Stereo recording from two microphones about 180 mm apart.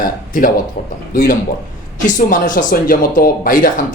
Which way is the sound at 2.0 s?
45° left (ahead or behind).